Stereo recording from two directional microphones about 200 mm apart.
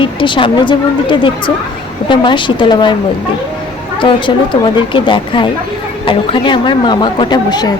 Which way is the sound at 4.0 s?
25° left (ahead or behind).